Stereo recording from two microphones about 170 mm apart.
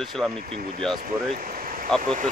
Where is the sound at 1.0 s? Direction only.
55° right (ahead or behind).